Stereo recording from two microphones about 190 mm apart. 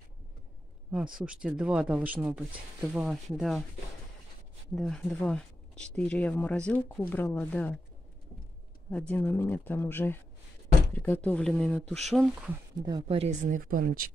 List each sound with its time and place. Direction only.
0.9 s speech: 5° right (ahead or behind)
4.7 s speech: 5° left (ahead or behind)
8.9 s speech: 5° left (ahead or behind)
12.8 s speech: 25° right (ahead or behind); by 13.9 s 50° right (ahead or behind)